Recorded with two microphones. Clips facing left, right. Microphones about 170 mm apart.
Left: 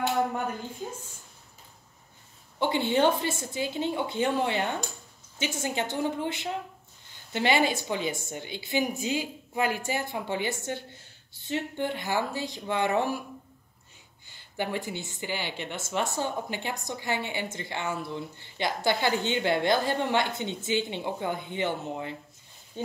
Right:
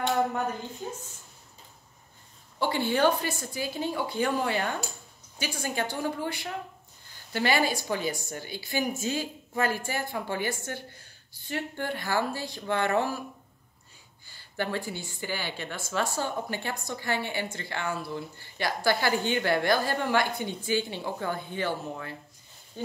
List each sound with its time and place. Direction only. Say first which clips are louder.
2.6 s a woman's voice: left 1 dB; 20° left (ahead or behind)
14.2 s a woman's voice: even; 20° left (ahead or behind)